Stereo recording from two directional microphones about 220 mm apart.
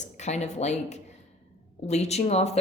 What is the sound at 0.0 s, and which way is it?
A woman's voice, 30° left (ahead or behind).